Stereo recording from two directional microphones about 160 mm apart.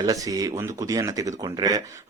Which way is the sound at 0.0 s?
20° right (ahead or behind).